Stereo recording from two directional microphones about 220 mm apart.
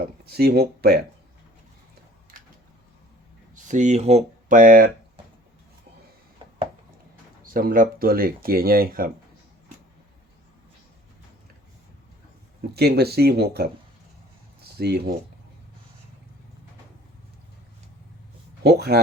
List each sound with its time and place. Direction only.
0.3 s speech: 45° right (ahead or behind)
2.3 s a sound: 40° right (ahead or behind)
3.5 s speech: 35° right (ahead or behind)
7.4 s speech: 40° right (ahead or behind)
12.7 s speech: 45° right (ahead or behind)
14.8 s speech: 45° right (ahead or behind)
18.6 s speech: 45° right (ahead or behind)